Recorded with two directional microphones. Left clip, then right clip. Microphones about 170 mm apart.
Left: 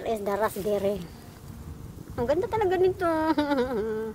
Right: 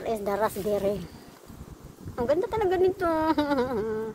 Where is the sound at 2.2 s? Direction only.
10° left (ahead or behind).